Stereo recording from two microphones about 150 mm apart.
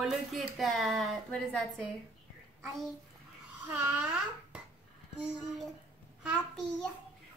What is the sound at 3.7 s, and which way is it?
Babbling, 15° right (ahead or behind).